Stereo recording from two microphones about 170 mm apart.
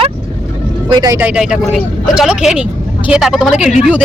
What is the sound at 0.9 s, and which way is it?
Speech, 20° right (ahead or behind).